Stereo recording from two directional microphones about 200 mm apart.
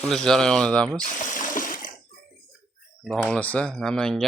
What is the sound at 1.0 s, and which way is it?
Water, 40° left (ahead or behind).